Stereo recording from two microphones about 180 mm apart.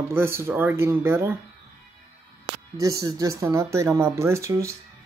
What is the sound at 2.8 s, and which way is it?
Speech, 20° right (ahead or behind).